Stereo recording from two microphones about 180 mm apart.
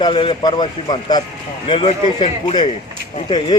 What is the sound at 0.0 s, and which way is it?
Speech, 30° left (ahead or behind).